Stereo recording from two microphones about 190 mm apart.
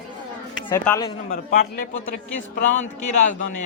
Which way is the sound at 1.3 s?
50° left (ahead or behind).